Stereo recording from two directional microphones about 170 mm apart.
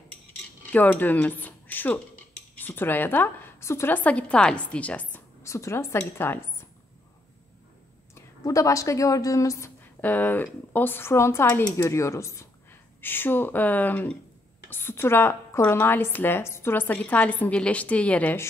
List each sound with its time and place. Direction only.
0.4 s cutlery: 10° left (ahead or behind)
2.5 s a woman's voice: 10° left (ahead or behind)
8.1 s speech: 20° left (ahead or behind)